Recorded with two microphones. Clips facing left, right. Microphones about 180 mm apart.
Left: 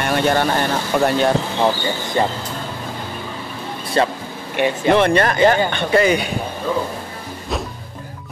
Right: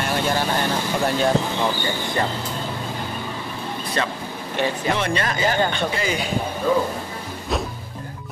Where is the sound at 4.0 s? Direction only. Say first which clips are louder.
Left 8 dB; 30° left (ahead or behind).